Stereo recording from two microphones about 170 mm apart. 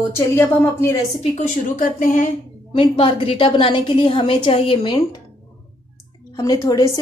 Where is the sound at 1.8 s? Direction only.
50° left (ahead or behind).